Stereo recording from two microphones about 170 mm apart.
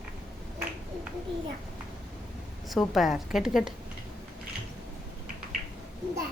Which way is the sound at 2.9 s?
Centre (ahead or behind).